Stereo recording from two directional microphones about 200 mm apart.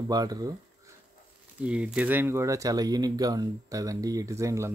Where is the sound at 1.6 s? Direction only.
5° right (ahead or behind).